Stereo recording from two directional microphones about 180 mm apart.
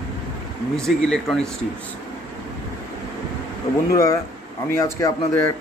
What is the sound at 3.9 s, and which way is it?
Speech, 15° left (ahead or behind).